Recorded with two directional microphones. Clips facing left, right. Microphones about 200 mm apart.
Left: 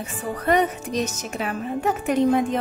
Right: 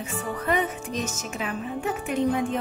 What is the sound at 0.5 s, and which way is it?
Speech, 75° left (ahead or behind).